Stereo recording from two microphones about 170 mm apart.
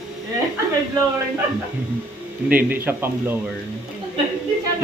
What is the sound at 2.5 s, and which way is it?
Speech, 10° right (ahead or behind).